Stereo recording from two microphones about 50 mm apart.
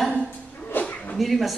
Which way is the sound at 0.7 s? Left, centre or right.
Left.